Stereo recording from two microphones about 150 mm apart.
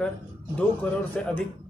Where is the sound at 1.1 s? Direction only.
5° left (ahead or behind).